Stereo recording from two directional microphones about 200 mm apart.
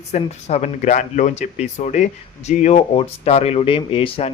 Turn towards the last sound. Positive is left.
turn(degrees=30)  # may be behind; listen again after turning